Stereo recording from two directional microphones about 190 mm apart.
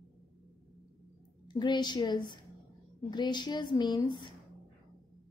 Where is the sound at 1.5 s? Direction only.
25° left (ahead or behind).